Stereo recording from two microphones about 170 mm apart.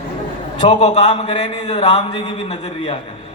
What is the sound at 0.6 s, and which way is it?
A man's voice, 35° left (ahead or behind).